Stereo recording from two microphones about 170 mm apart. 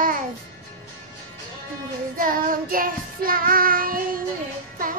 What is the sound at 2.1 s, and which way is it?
Child singing, 55° right (ahead or behind).